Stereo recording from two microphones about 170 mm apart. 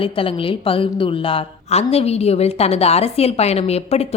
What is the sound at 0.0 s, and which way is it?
A woman's voice, 30° left (ahead or behind).